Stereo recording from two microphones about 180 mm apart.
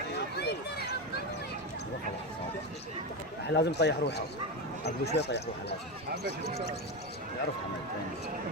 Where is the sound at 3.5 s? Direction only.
70° left (ahead or behind).